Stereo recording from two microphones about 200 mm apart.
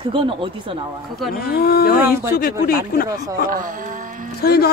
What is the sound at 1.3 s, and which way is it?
A man's voice, 50° left (ahead or behind).